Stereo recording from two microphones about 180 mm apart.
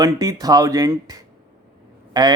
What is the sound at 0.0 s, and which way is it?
Speech, 20° right (ahead or behind).